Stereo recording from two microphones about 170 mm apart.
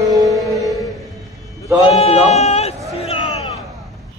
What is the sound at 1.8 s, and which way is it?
Speech, 40° left (ahead or behind).